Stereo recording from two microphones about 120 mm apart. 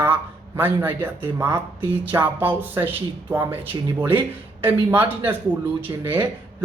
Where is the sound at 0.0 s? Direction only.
15° right (ahead or behind).